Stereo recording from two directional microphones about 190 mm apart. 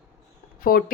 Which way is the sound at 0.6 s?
50° left (ahead or behind).